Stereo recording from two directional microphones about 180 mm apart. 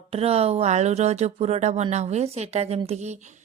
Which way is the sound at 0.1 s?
35° right (ahead or behind).